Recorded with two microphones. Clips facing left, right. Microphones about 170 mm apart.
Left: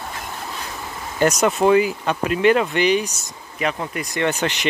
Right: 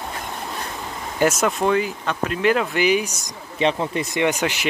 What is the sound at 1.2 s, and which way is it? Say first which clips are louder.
Speech: left 2 dB; 5° right (ahead or behind).